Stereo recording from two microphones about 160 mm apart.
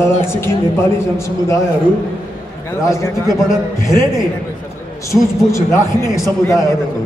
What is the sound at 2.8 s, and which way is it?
Speech, 20° left (ahead or behind).